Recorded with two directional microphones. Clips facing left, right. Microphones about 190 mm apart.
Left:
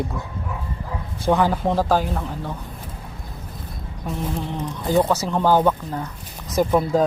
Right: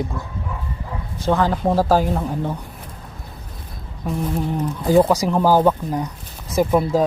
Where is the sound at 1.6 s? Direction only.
10° right (ahead or behind).